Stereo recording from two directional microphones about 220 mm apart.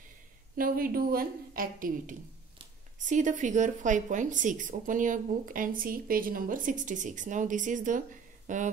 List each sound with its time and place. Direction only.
0.6 s speech: 40° right (ahead or behind)